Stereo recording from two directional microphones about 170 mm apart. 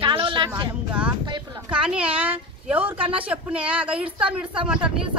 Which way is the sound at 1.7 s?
5° right (ahead or behind).